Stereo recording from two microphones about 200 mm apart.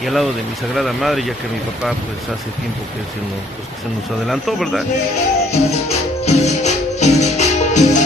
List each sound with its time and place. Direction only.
0.0 s speech: centre (ahead or behind)
4.3 s speech: centre (ahead or behind)
5.5 s music: 30° left (ahead or behind)